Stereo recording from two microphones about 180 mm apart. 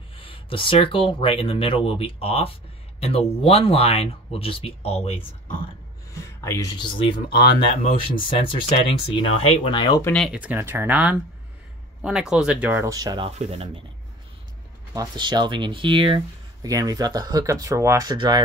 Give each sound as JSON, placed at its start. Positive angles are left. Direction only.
{"t": 0.1, "sound": "speech", "side_deg": 30}
{"t": 6.1, "sound": "speech", "side_deg": 15}
{"t": 8.4, "sound": "speech", "side_deg": 30}
{"t": 10.0, "sound": "speech", "side_deg": 5}
{"t": 10.3, "sound": "speech", "side_deg": -10}
{"t": 13.4, "sound": "speech", "side_deg": -35}
{"t": 15.0, "sound": "speech", "side_deg": -25}